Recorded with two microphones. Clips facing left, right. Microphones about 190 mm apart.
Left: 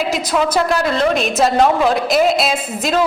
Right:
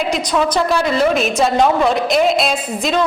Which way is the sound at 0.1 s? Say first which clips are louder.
Even; 5° left (ahead or behind).